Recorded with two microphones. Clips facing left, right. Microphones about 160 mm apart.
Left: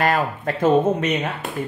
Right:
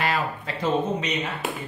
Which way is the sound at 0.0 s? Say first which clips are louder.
Left 6 dB; 50° left (ahead or behind).